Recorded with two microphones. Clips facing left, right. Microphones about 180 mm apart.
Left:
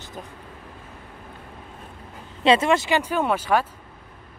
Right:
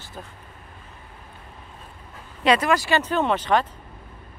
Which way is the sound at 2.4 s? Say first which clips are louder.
Left 2 dB; 25° left (ahead or behind).